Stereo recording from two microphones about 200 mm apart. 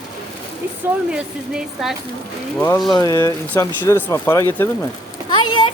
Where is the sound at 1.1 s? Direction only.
5° right (ahead or behind).